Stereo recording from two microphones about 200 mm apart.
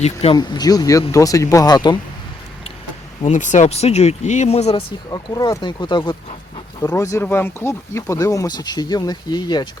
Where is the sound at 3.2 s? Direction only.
40° left (ahead or behind).